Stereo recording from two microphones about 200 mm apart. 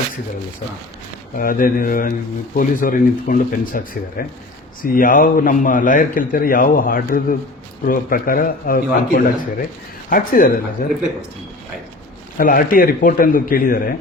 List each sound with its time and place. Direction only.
1.4 s a man's voice: 45° left (ahead or behind)
12.4 s a man's voice: 45° left (ahead or behind)